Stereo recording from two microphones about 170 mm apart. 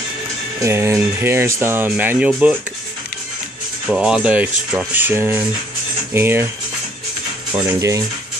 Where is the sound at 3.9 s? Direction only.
5° right (ahead or behind).